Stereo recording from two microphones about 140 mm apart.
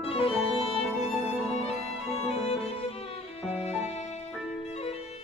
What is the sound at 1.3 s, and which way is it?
Music, 45° left (ahead or behind).